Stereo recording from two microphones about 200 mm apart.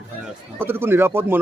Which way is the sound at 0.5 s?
10° right (ahead or behind).